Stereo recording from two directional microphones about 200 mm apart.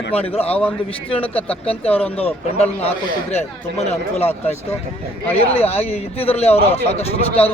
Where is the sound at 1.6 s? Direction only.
30° left (ahead or behind).